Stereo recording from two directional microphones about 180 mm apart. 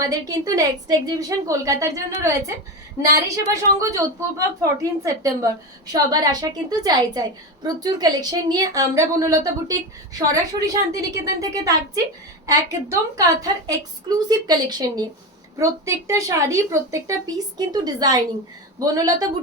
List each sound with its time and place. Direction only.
0.1 s a woman's voice: 20° right (ahead or behind)